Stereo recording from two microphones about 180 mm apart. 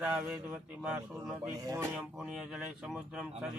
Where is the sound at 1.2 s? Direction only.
5° right (ahead or behind).